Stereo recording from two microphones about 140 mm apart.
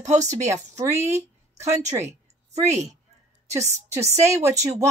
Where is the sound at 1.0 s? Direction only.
20° right (ahead or behind).